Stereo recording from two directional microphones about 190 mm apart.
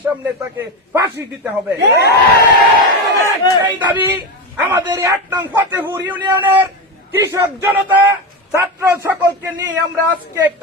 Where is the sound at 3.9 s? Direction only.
10° right (ahead or behind).